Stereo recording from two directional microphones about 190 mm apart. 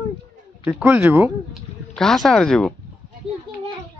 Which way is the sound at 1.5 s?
Centre (ahead or behind).